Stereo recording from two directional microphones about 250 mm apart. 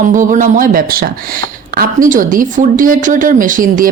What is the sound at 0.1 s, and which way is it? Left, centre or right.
Speech, right.